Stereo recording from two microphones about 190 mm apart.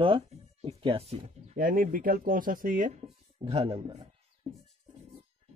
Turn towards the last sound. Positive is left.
turn(degrees=-30)  # may be behind; listen again after turning